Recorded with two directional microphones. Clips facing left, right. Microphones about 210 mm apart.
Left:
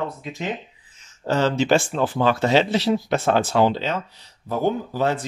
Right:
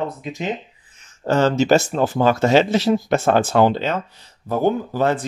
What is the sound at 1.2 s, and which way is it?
Speech, 50° right (ahead or behind).